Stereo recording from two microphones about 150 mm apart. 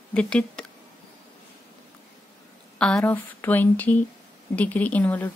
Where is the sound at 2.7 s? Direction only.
5° left (ahead or behind).